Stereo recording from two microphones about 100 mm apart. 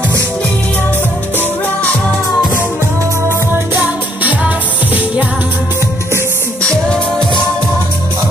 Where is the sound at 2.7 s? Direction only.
25° right (ahead or behind).